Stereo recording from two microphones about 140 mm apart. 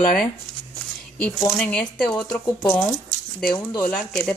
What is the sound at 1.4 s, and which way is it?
Speech, 5° left (ahead or behind).